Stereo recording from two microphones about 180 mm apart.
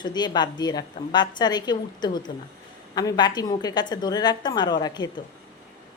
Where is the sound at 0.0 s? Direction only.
25° left (ahead or behind).